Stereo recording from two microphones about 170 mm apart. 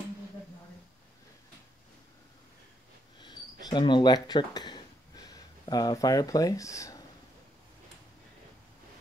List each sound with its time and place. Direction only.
3.6 s speech: 25° left (ahead or behind)